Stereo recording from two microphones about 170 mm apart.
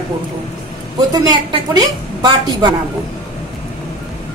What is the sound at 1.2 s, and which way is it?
A woman's voice, 25° right (ahead or behind).